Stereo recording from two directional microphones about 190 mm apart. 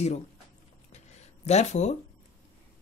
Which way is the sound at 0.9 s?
35° left (ahead or behind).